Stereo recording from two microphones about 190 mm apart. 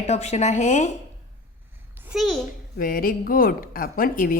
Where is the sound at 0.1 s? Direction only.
35° left (ahead or behind).